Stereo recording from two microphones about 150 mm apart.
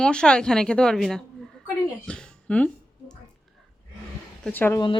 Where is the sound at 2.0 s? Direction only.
5° left (ahead or behind).